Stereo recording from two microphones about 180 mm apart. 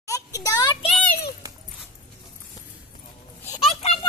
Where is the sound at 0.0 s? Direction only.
20° left (ahead or behind).